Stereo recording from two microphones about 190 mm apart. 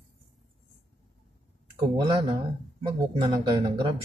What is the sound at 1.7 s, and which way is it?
Speech, 25° right (ahead or behind).